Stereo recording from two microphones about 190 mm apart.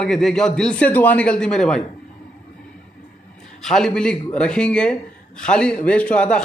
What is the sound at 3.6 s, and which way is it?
A man's voice, centre (ahead or behind).